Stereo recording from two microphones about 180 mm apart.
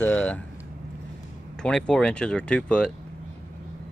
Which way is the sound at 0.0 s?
10° left (ahead or behind).